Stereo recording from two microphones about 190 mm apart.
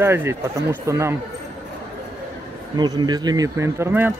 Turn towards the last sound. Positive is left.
turn(degrees=-10)  # may be behind; listen again after turning